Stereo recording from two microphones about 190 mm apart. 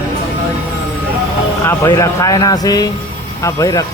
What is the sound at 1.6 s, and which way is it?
Speech, 15° left (ahead or behind).